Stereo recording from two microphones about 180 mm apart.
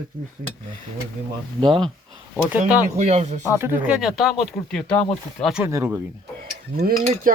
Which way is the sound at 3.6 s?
10° right (ahead or behind).